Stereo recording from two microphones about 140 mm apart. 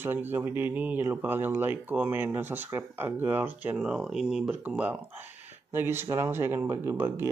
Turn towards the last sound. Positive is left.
turn(degrees=-20)  # may be behind; listen again after turning